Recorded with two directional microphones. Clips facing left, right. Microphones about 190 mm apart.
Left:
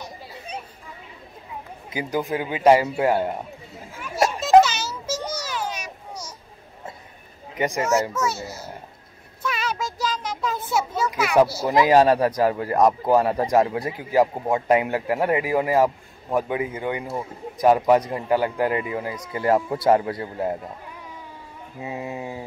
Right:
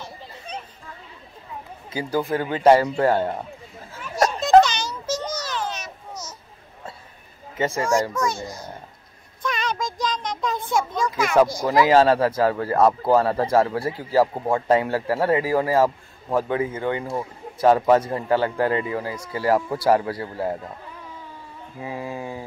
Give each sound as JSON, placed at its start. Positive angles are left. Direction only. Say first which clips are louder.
{"t": 0.0, "sound": "chatter", "louder": "left 1 dB", "side_deg": 10}
{"t": 1.9, "sound": "speech", "louder": "right 2 dB", "side_deg": 20}
{"t": 3.9, "sound": "a sound", "louder": "right 1 dB", "side_deg": 5}
{"t": 7.5, "sound": "a child's voice", "louder": "even", "side_deg": 15}
{"t": 9.4, "sound": "a sound", "louder": "right 1 dB", "side_deg": 5}
{"t": 11.7, "sound": "speech", "louder": "even", "side_deg": 20}
{"t": 21.8, "sound": "speech", "louder": "even", "side_deg": 25}